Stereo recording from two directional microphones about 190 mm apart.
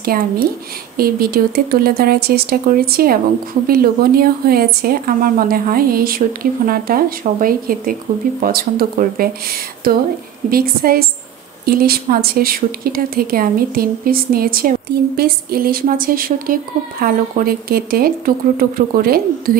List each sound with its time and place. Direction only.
0.0 s speech: 50° right (ahead or behind)